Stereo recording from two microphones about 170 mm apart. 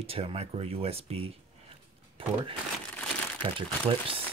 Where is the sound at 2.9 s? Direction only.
10° left (ahead or behind).